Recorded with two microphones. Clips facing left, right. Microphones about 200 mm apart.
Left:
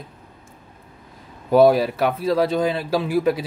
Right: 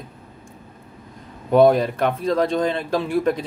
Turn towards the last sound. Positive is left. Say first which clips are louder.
# left 1 dB
turn(degrees=5)  # may be behind; listen again after turning